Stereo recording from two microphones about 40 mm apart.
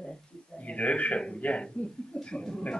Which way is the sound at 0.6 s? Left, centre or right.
Left.